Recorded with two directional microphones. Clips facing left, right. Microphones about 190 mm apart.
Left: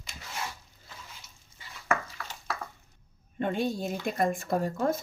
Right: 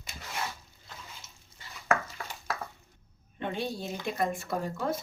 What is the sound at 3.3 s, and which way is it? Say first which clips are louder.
Speech: left 5 dB; 50° left (ahead or behind).